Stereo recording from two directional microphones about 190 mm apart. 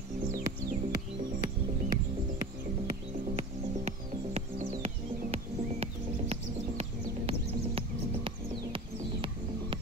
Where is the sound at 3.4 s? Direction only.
35° right (ahead or behind).